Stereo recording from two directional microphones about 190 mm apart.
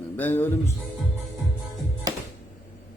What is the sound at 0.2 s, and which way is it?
Speech, 10° left (ahead or behind).